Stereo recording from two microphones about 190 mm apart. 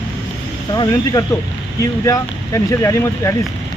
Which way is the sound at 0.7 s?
20° left (ahead or behind).